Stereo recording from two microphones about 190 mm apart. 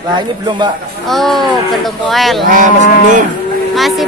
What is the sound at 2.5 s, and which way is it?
Cattle, 45° right (ahead or behind).